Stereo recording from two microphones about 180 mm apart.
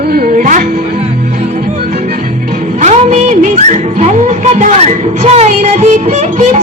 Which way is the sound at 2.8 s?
40° right (ahead or behind).